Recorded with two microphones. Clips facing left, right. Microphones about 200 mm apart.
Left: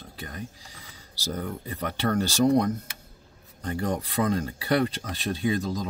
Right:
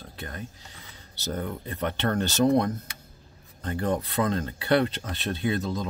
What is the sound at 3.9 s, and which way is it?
Speech, 10° left (ahead or behind).